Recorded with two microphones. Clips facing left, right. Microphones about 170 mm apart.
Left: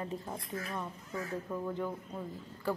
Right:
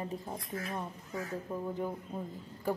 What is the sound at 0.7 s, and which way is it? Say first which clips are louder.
Speech: right 1 dB; 25° right (ahead or behind).